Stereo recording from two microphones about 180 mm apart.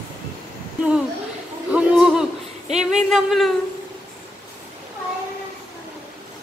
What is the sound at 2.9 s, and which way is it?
Speech, centre (ahead or behind).